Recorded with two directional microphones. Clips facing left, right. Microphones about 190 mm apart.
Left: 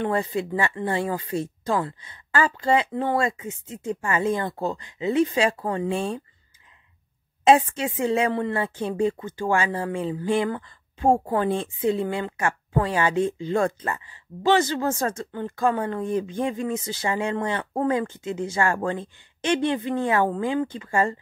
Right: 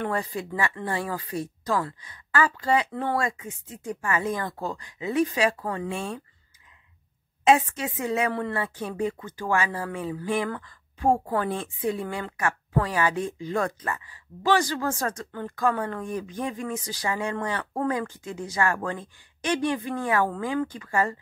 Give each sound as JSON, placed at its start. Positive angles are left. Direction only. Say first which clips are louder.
{"t": 0.0, "sound": "a woman's voice", "louder": "left 4 dB", "side_deg": 25}
{"t": 7.4, "sound": "a woman's voice", "louder": "left 3 dB", "side_deg": 30}